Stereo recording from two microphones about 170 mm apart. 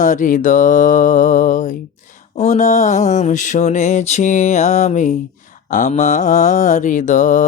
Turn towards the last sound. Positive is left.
turn(degrees=45)  # may be behind; listen again after turning